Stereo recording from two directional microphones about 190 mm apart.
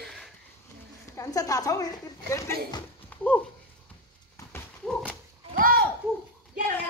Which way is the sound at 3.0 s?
5° left (ahead or behind).